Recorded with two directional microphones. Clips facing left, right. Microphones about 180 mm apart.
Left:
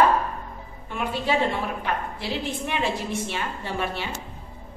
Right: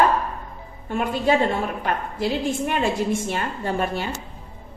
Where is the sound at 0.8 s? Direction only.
45° right (ahead or behind).